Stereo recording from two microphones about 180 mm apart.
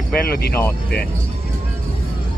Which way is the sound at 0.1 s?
60° left (ahead or behind).